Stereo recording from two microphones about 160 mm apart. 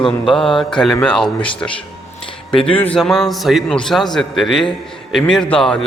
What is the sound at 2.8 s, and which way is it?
Mantra, 5° left (ahead or behind).